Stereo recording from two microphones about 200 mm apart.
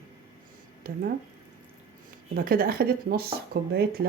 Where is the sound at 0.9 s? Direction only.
45° right (ahead or behind).